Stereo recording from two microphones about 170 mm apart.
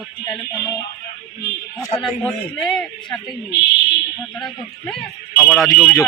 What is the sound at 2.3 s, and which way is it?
Speech, 5° left (ahead or behind).